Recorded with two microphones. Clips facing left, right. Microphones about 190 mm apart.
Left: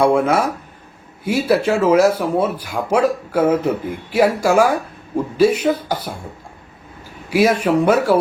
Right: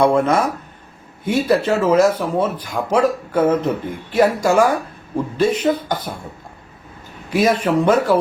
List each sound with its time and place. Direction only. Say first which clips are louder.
0.0 s speech: even; 10° left (ahead or behind)
7.3 s speech: left 1 dB; 10° left (ahead or behind)